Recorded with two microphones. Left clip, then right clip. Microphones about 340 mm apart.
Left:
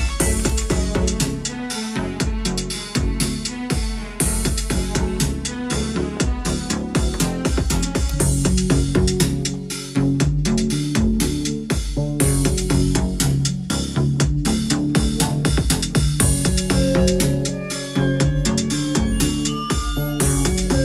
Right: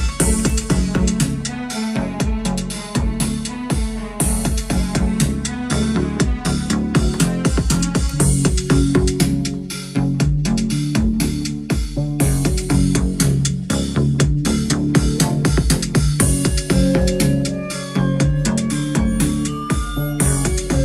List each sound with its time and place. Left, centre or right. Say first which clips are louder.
5.7 s music: right 3 dB; centre
12.6 s music: right 1 dB; centre
20.2 s music: even; left